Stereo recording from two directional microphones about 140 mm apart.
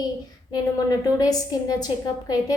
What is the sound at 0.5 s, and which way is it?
A woman's voice, 25° left (ahead or behind).